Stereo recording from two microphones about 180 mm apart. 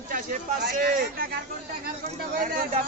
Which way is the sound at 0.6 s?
60° right (ahead or behind).